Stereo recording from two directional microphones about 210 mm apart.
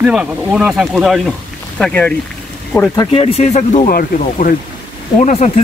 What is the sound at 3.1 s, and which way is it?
Speech, 30° left (ahead or behind).